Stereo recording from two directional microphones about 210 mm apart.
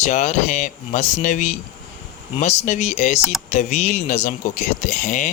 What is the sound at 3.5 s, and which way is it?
Speech, 30° left (ahead or behind).